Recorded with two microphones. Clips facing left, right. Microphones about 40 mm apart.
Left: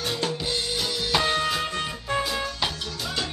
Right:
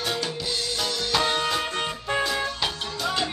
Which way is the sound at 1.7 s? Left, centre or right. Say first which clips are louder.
Right 1 dB; right.